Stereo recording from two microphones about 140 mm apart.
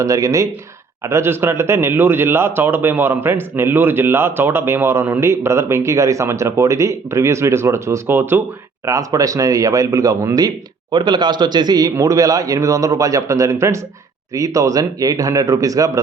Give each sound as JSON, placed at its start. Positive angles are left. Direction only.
{"t": 0.0, "sound": "speech", "side_deg": -25}